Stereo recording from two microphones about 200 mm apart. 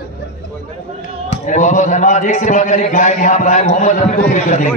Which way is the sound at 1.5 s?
40° left (ahead or behind).